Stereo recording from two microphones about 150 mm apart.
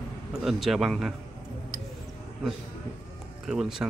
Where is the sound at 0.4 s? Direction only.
Centre (ahead or behind).